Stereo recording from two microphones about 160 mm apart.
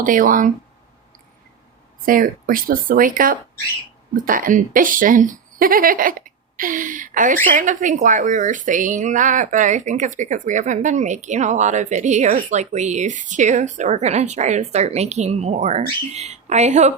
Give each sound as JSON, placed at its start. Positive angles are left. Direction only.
{"t": 0.0, "sound": "a woman's voice", "side_deg": -55}
{"t": 2.0, "sound": "a woman's voice", "side_deg": -60}